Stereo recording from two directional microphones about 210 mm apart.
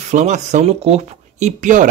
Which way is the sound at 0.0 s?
35° right (ahead or behind).